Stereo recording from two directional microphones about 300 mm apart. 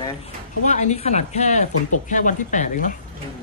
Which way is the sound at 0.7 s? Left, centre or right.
Left.